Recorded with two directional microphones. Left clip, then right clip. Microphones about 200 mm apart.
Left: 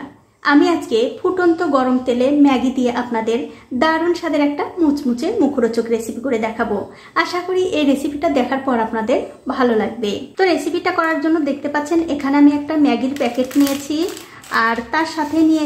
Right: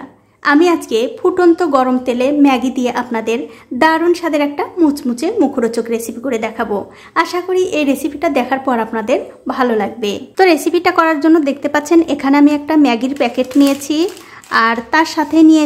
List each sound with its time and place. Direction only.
0.4 s a woman's voice: 25° right (ahead or behind)